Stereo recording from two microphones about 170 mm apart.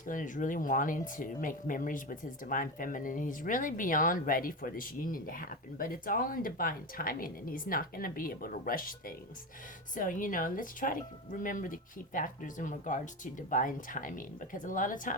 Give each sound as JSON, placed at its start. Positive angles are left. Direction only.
{"t": 0.0, "sound": "speech", "side_deg": 50}